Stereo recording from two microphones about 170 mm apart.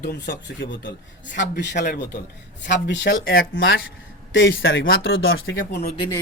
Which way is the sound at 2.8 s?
90° left.